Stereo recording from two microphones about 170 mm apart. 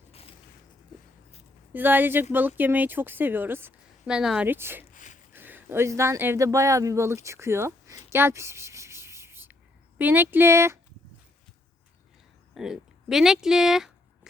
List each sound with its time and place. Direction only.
0.1 s a sound: 35° left (ahead or behind)
1.7 s a woman's voice: 10° right (ahead or behind)
12.5 s speech: centre (ahead or behind)